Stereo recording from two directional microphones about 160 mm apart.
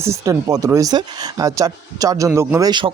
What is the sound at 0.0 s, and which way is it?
Speech, 20° right (ahead or behind).